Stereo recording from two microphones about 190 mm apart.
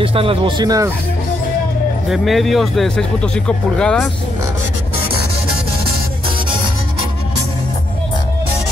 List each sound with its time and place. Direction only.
0.0 s speech: 30° right (ahead or behind)
2.0 s speech: centre (ahead or behind)